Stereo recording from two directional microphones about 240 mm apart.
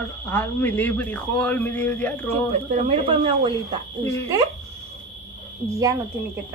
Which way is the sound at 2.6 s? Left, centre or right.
Right.